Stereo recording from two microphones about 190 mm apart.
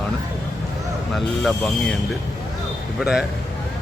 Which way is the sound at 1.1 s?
5° left (ahead or behind).